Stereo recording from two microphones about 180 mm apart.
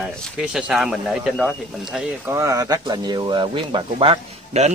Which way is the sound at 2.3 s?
15° right (ahead or behind).